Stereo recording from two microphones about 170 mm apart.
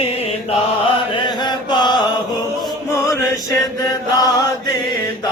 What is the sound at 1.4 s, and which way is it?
Chant, 25° left (ahead or behind).